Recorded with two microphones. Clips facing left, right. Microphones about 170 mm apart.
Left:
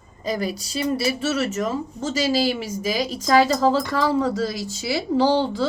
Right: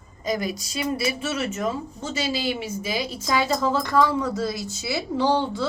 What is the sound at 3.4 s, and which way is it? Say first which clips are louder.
A woman's voice: left 4 dB; 90° left.